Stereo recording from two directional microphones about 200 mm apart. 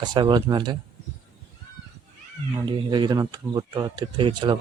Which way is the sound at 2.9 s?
20° right (ahead or behind).